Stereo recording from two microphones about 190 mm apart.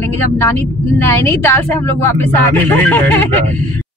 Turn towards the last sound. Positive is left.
turn(degrees=10)  # may be behind; listen again after turning